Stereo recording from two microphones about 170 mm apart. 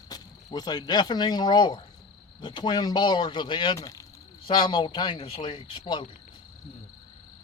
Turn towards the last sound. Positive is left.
turn(degrees=30)  # may be behind; listen again after turning